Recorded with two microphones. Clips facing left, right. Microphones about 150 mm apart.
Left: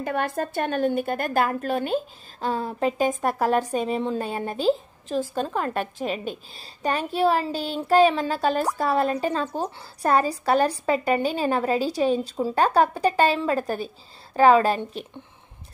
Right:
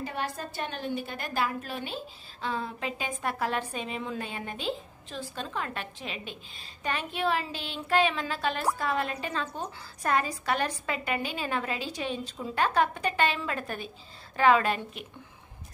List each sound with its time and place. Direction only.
0.0 s a woman's voice: 55° left (ahead or behind); by 15.0 s 35° left (ahead or behind)